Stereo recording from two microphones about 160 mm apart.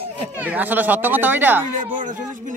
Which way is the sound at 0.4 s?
10° right (ahead or behind).